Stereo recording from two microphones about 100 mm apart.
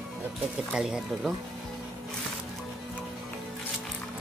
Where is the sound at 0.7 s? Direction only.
5° right (ahead or behind).